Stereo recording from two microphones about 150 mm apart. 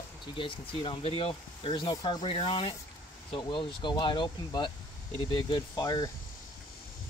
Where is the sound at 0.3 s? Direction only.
35° left (ahead or behind).